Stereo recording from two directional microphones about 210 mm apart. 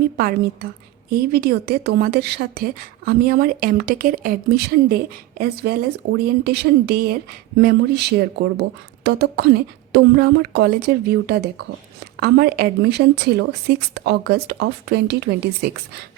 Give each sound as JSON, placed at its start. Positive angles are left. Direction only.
{"t": 0.2, "sound": "a woman's voice", "side_deg": -45}